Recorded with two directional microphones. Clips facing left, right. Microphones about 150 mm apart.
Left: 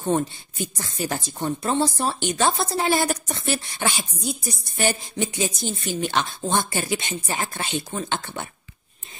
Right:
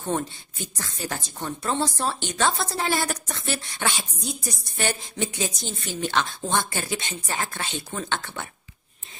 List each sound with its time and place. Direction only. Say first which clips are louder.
0.9 s a woman's voice: left 5 dB; 15° left (ahead or behind)